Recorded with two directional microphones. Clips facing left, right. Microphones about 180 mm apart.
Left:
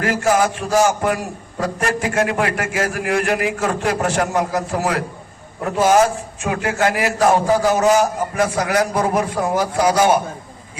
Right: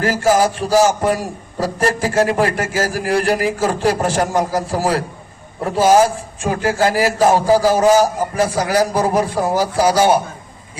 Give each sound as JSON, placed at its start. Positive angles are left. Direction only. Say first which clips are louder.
{"t": 0.0, "sound": "a man's voice", "louder": "right 2 dB", "side_deg": -30}